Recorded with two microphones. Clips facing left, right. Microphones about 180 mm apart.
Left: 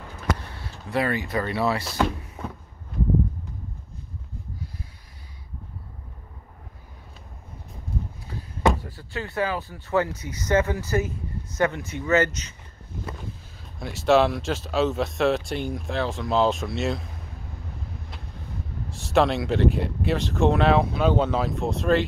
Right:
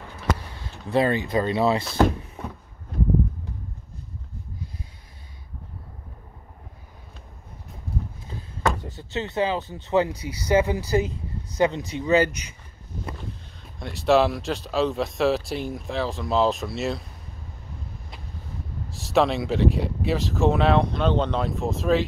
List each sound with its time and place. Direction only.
0.8 s speech: 25° right (ahead or behind)
8.8 s speech: 25° right (ahead or behind)
13.7 s speech: centre (ahead or behind)
18.9 s speech: centre (ahead or behind)